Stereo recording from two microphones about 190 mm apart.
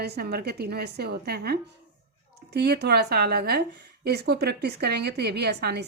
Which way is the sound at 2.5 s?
60° right (ahead or behind).